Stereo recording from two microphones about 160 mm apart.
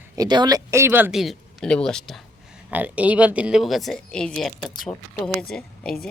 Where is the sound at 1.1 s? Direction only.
Centre (ahead or behind).